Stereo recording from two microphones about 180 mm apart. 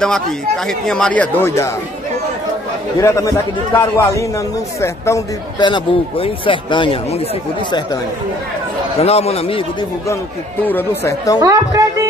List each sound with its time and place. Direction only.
0.7 s a man's voice: 5° left (ahead or behind)
3.0 s a man's voice: 15° left (ahead or behind); by 7.2 s 30° left (ahead or behind)
9.0 s speech: 35° left (ahead or behind)
10.6 s a man's voice: 10° left (ahead or behind)
11.3 s a woman's voice: 20° right (ahead or behind)